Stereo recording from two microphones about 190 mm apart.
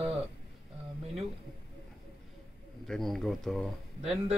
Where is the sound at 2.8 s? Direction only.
Centre (ahead or behind).